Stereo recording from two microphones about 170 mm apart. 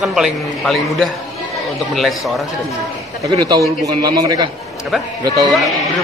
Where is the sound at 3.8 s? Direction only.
25° right (ahead or behind).